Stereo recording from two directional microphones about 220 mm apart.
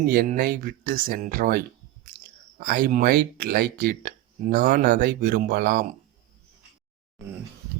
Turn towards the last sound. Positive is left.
turn(degrees=-40)  # may be behind; listen again after turning